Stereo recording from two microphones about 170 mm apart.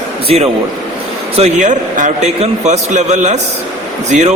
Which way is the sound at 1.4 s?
45° right (ahead or behind).